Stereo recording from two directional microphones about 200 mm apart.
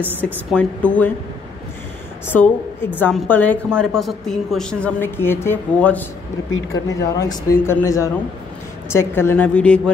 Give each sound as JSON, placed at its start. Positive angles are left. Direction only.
{"t": 0.2, "sound": "a woman's voice", "side_deg": 5}
{"t": 2.2, "sound": "a woman's voice", "side_deg": 10}